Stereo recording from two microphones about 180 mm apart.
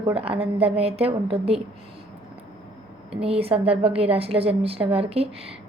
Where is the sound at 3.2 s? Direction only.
35° right (ahead or behind).